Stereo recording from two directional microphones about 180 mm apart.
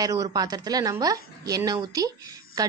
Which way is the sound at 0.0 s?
20° right (ahead or behind).